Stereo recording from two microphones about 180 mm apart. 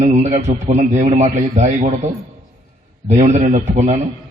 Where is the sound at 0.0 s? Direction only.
40° right (ahead or behind).